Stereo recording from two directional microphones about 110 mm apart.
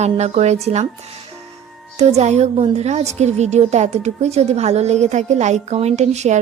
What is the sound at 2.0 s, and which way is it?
A woman's voice, 80° right.